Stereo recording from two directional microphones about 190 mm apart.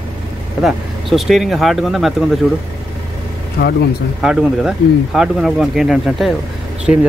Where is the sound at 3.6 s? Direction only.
55° left (ahead or behind).